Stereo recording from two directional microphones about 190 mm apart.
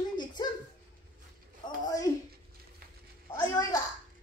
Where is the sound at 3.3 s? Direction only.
15° left (ahead or behind).